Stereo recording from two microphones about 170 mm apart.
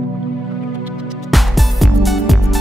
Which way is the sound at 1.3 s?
Centre (ahead or behind).